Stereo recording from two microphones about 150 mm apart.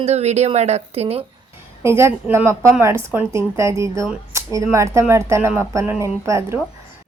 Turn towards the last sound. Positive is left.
turn(degrees=-20)  # may be behind; listen again after turning